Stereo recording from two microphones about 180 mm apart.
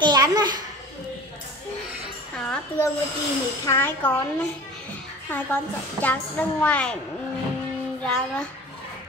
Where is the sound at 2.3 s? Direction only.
5° left (ahead or behind).